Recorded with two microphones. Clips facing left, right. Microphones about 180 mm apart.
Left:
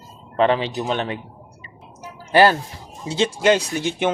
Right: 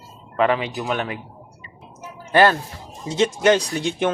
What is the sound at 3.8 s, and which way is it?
Speech, 5° left (ahead or behind).